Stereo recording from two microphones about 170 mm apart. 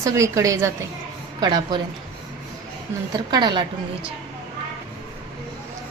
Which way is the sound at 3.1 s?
25° right (ahead or behind).